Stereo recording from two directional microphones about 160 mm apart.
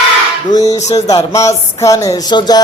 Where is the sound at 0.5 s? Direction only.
20° left (ahead or behind).